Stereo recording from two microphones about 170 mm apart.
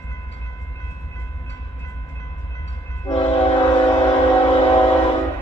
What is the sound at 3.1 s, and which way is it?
Train, 35° left (ahead or behind).